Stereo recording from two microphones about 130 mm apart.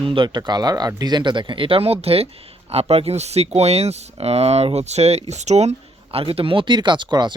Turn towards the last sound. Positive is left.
turn(degrees=-35)  # may be behind; listen again after turning